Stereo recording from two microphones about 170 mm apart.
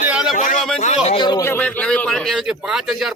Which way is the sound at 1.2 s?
20° left (ahead or behind).